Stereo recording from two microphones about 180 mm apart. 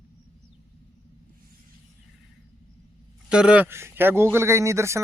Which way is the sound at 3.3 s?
5° right (ahead or behind).